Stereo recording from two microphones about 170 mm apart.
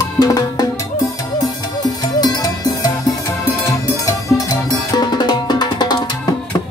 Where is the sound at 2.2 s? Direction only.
20° left (ahead or behind).